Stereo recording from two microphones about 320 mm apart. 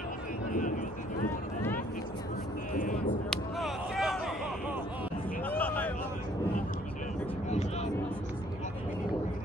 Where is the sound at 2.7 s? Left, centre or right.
Left.